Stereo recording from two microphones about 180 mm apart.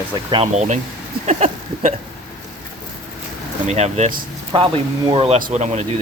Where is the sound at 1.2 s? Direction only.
40° right (ahead or behind).